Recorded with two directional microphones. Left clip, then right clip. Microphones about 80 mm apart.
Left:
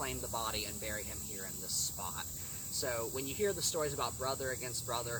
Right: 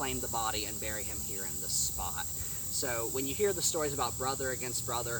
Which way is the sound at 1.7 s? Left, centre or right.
Right.